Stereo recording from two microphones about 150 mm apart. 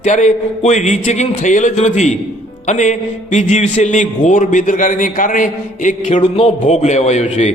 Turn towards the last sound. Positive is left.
turn(degrees=50)  # may be behind; listen again after turning